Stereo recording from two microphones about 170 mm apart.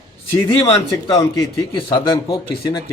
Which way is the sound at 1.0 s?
25° left (ahead or behind).